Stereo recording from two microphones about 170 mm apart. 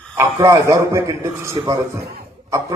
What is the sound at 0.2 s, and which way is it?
A man's voice, 20° right (ahead or behind).